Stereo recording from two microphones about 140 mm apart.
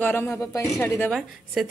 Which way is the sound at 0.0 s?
15° left (ahead or behind).